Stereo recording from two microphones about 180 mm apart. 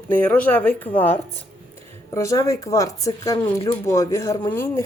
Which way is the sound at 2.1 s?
15° left (ahead or behind).